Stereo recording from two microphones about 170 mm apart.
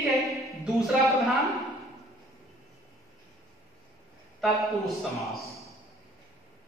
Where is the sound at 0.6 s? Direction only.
Centre (ahead or behind).